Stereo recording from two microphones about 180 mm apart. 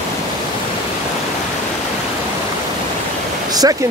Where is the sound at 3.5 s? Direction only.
20° right (ahead or behind).